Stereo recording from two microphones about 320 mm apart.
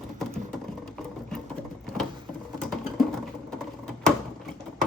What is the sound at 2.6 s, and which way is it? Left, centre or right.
Typing, centre.